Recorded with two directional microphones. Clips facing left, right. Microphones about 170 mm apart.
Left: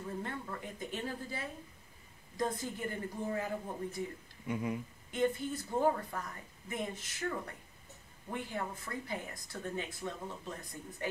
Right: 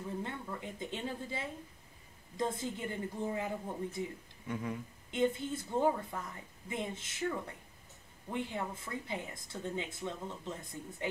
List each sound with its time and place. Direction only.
0.2 s speech: 20° right (ahead or behind)
4.5 s speech: 15° left (ahead or behind)
5.1 s speech: 25° right (ahead or behind)
8.3 s speech: 20° right (ahead or behind)